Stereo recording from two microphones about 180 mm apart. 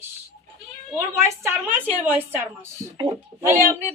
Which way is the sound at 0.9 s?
15° right (ahead or behind).